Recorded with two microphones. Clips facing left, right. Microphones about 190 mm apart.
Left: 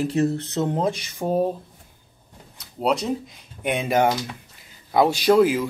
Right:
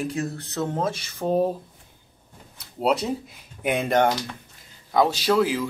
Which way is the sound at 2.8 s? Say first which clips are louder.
Even; 5° right (ahead or behind).